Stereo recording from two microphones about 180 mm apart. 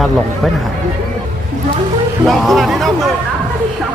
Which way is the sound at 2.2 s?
Centre (ahead or behind).